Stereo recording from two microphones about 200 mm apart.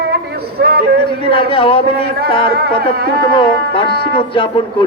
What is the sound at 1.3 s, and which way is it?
Speech, 25° left (ahead or behind).